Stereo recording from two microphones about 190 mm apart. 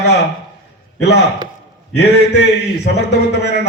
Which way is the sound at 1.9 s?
60° left (ahead or behind).